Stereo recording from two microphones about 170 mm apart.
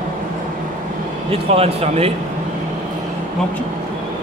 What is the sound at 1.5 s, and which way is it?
Speech, 35° right (ahead or behind).